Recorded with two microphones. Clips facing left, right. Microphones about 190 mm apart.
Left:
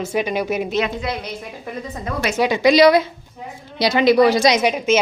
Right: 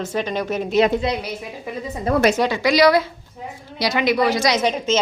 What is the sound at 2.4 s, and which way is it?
Speech, 20° left (ahead or behind).